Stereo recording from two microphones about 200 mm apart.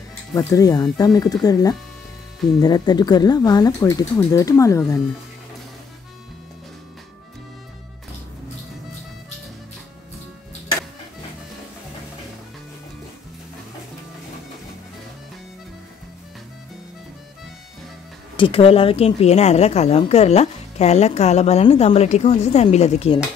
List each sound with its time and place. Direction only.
0.3 s speech: 15° left (ahead or behind)
18.3 s speech: 25° left (ahead or behind)